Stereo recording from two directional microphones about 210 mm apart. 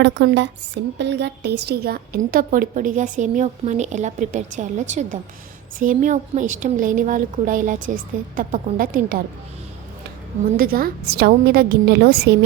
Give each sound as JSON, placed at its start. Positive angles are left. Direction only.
{"t": 0.0, "sound": "a woman's voice", "side_deg": -55}
{"t": 10.6, "sound": "a woman's voice", "side_deg": -45}